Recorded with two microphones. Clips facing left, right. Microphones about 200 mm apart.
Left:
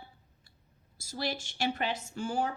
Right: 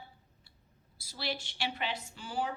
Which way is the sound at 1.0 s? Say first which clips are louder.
Left 3 dB; 45° left (ahead or behind).